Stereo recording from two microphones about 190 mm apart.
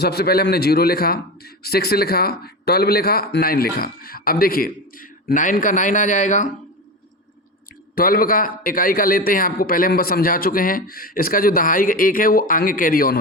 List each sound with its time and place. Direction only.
0.0 s a man's voice: 55° left (ahead or behind); by 6.5 s 40° left (ahead or behind)
7.9 s a man's voice: 50° left (ahead or behind)